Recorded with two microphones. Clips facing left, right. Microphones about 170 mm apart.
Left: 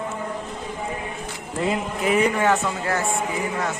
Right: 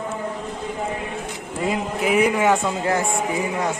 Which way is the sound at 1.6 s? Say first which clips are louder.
Right 1 dB; 5° right (ahead or behind).